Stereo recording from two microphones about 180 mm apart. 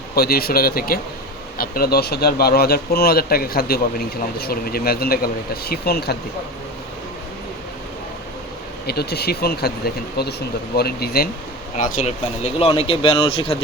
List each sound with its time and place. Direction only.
0.2 s speech: 60° left (ahead or behind)
8.9 s speech: 60° left (ahead or behind)
11.8 s speech: 45° left (ahead or behind); by 13.6 s 30° left (ahead or behind)